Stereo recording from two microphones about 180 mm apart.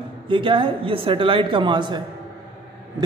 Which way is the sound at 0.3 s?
30° right (ahead or behind).